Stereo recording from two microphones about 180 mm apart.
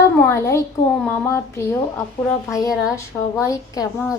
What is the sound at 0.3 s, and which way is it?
Speech, 15° left (ahead or behind).